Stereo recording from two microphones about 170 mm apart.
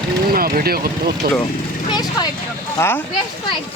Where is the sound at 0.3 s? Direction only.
60° right (ahead or behind).